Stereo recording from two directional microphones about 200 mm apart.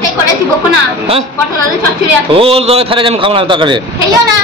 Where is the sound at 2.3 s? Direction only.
30° right (ahead or behind).